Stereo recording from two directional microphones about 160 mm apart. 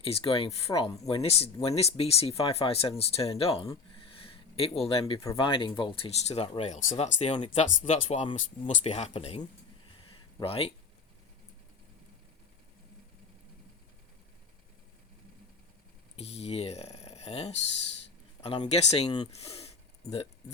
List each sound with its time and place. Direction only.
0.0 s speech: 35° left (ahead or behind)
4.2 s a sound: 35° left (ahead or behind)
4.8 s speech: 35° left (ahead or behind)
10.4 s speech: 35° left (ahead or behind)
16.1 s a sound: 40° left (ahead or behind)
18.4 s speech: 30° left (ahead or behind)
18.7 s speech: 40° left (ahead or behind)
19.3 s speech: 40° left (ahead or behind)